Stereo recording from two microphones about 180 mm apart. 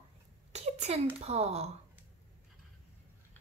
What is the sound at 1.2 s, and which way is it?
Speech, 35° right (ahead or behind).